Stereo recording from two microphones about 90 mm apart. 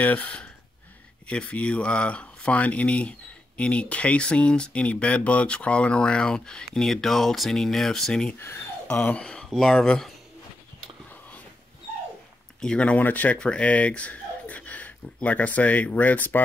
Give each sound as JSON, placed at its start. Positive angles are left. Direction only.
{"t": 0.0, "sound": "speech", "side_deg": 15}
{"t": 8.4, "sound": "speech", "side_deg": 25}
{"t": 8.8, "sound": "speech", "side_deg": 15}
{"t": 12.6, "sound": "speech", "side_deg": 15}